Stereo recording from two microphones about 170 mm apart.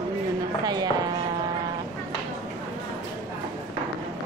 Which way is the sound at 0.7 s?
25° right (ahead or behind).